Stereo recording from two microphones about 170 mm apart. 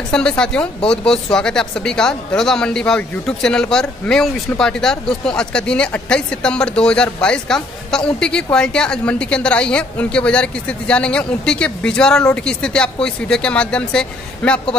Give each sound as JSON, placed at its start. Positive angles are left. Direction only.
{"t": 0.1, "sound": "speech", "side_deg": 5}